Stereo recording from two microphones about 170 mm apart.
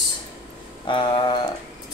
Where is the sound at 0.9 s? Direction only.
30° left (ahead or behind).